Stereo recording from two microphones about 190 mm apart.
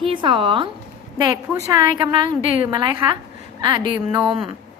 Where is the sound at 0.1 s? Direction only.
25° right (ahead or behind).